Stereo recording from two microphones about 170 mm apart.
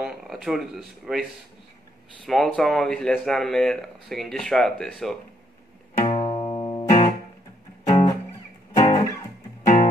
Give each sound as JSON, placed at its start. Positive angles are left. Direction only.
{"t": 0.0, "sound": "speech", "side_deg": 0}
{"t": 2.2, "sound": "speech", "side_deg": 0}
{"t": 5.9, "sound": "music", "side_deg": 35}